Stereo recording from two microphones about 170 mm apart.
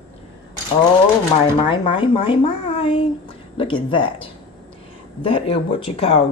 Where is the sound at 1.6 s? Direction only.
30° left (ahead or behind).